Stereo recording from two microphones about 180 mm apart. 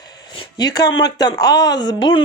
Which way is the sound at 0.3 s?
20° left (ahead or behind).